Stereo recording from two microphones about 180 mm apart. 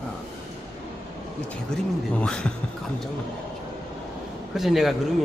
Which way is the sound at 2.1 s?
5° left (ahead or behind).